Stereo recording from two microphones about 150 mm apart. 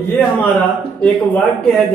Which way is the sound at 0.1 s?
15° left (ahead or behind).